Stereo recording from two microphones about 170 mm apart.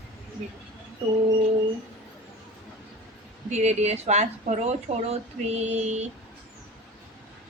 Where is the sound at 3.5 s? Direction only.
40° right (ahead or behind).